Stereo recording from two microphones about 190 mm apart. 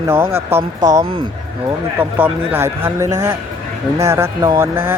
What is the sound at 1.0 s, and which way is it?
Speech, 30° right (ahead or behind).